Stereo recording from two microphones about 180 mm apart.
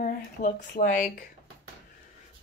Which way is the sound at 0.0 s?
45° left (ahead or behind).